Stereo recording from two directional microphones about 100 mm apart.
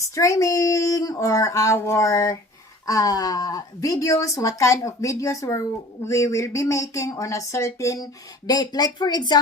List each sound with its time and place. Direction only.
0.1 s speech: 30° left (ahead or behind)